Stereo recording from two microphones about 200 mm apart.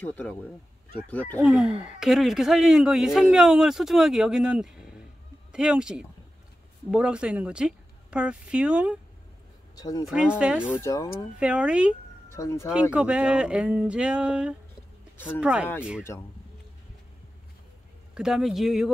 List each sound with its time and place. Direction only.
0.0 s speech: 5° left (ahead or behind)
1.4 s speech: 5° right (ahead or behind)
9.8 s speech: 20° left (ahead or behind)
10.0 s speech: 5° right (ahead or behind)
10.7 s speech: 15° left (ahead or behind)
11.3 s speech: 5° right (ahead or behind)
12.3 s speech: 15° left (ahead or behind)
12.9 s speech: 5° right (ahead or behind)
15.1 s speech: 10° left (ahead or behind)
15.4 s speech: 5° right (ahead or behind)
18.1 s speech: centre (ahead or behind)